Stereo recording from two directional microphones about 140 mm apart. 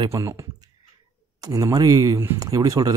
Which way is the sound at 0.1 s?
20° right (ahead or behind).